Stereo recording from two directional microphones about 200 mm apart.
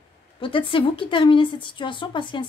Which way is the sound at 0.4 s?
25° left (ahead or behind).